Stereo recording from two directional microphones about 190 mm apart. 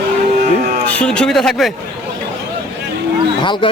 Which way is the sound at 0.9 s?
5° left (ahead or behind).